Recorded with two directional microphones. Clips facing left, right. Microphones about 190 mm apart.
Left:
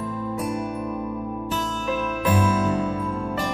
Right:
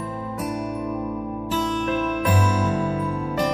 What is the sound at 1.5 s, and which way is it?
Music, centre (ahead or behind).